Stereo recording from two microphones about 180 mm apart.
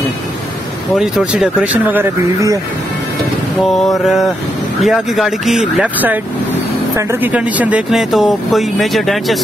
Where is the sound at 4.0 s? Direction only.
Centre (ahead or behind).